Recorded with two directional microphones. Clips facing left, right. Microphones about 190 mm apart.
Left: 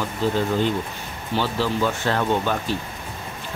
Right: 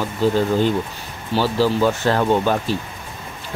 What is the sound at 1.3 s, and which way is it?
Speech, 35° right (ahead or behind).